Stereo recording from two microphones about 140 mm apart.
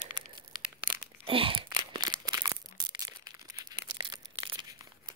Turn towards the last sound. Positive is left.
turn(degrees=-30)  # may be behind; listen again after turning